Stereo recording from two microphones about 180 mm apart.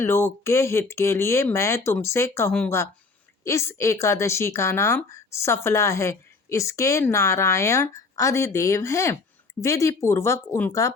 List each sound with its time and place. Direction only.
0.0 s a woman's voice: 15° left (ahead or behind)